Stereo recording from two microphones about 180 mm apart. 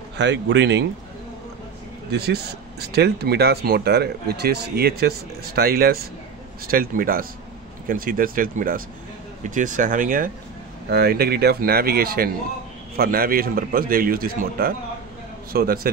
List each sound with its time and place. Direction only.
0.2 s speech: 80° right
2.1 s speech: 60° right (ahead or behind)
10.9 s speech: 60° right (ahead or behind)